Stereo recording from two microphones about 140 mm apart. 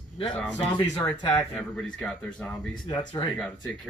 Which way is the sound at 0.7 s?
30° left (ahead or behind).